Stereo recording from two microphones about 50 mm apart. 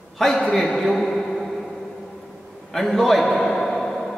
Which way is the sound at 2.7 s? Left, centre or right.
Centre.